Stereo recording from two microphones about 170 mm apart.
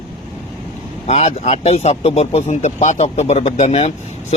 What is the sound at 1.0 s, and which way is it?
Speech, 40° left (ahead or behind).